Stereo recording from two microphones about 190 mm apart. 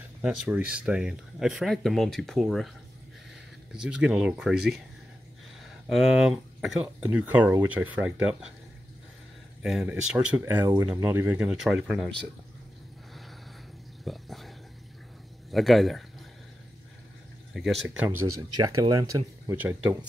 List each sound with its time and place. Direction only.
0.2 s speech: 5° right (ahead or behind)
3.7 s speech: 5° right (ahead or behind)
9.6 s speech: 5° right (ahead or behind)
14.0 s a sound: centre (ahead or behind)
15.5 s speech: centre (ahead or behind)
17.6 s speech: centre (ahead or behind)